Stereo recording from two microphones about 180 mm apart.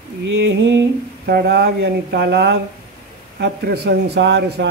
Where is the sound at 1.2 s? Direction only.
65° right (ahead or behind).